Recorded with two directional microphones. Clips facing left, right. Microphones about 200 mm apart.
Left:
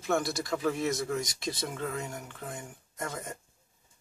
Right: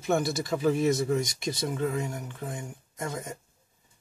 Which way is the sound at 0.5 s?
20° right (ahead or behind).